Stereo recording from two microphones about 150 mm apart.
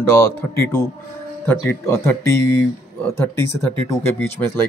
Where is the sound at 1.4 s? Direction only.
15° left (ahead or behind).